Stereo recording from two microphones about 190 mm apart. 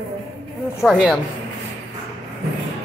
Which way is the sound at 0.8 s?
Centre (ahead or behind).